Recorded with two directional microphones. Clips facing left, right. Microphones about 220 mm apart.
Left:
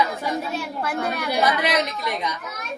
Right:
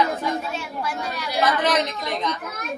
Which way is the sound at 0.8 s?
55° left (ahead or behind).